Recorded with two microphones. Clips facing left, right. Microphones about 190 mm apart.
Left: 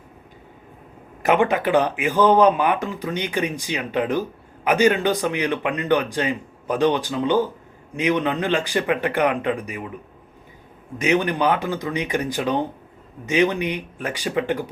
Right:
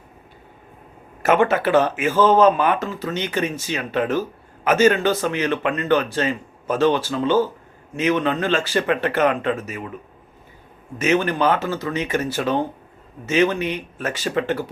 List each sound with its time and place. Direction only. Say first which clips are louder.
1.2 s speech: right 1 dB; 15° left (ahead or behind)
10.9 s speech: right 1 dB; 15° left (ahead or behind)